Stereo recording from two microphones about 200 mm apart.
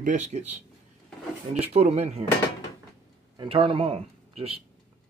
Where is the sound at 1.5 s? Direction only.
30° right (ahead or behind).